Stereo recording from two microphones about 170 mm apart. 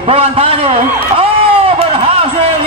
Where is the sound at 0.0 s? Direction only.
35° right (ahead or behind).